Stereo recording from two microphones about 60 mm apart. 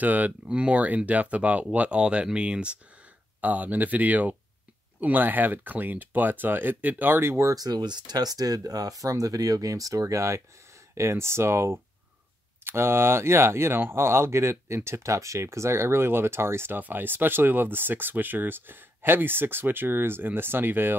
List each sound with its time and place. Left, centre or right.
0.0 s speech: right
7.2 s speech: right
7.4 s speech: right